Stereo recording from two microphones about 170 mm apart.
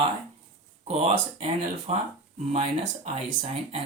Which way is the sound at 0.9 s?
40° right (ahead or behind).